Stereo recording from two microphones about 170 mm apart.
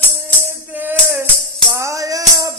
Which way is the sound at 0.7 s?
10° right (ahead or behind).